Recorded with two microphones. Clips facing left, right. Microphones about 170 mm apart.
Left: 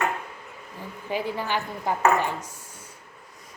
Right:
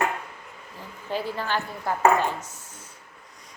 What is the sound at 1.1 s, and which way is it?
Speech, 15° left (ahead or behind).